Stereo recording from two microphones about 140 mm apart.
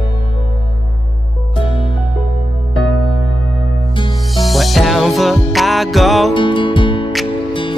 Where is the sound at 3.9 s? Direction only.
35° left (ahead or behind).